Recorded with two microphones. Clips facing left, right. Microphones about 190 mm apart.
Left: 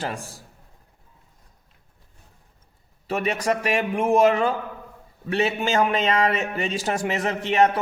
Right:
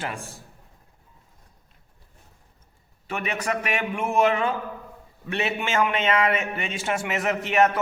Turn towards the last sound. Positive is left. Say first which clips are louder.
# left 1 dB
turn(degrees=30)  # may be behind; listen again after turning